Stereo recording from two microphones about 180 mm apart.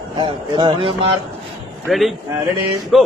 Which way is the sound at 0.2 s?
25° right (ahead or behind).